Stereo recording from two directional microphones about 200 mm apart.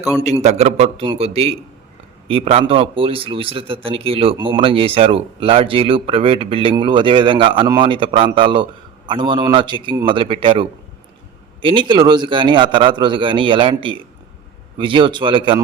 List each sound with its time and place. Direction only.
0.4 s a man's voice: 30° right (ahead or behind)